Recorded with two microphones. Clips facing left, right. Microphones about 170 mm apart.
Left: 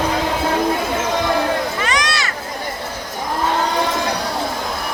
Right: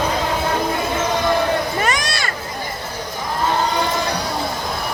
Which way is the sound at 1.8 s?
50° right (ahead or behind).